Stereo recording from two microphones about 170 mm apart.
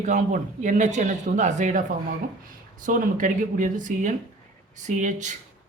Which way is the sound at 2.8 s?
50° right (ahead or behind).